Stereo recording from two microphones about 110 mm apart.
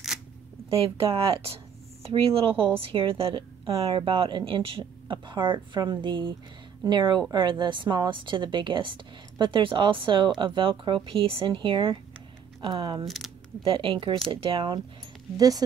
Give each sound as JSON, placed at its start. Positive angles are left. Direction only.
{"t": 0.7, "sound": "a woman's voice", "side_deg": -60}
{"t": 13.0, "sound": "speech", "side_deg": 0}
{"t": 13.6, "sound": "a woman's voice", "side_deg": -55}
{"t": 15.3, "sound": "speech", "side_deg": -35}